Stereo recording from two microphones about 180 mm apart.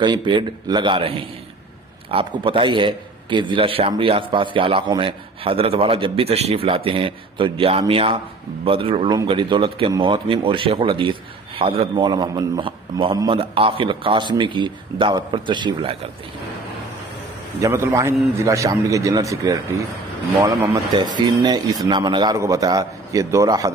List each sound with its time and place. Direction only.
0.0 s a man's voice: 25° right (ahead or behind)
17.6 s a man's voice: 15° right (ahead or behind)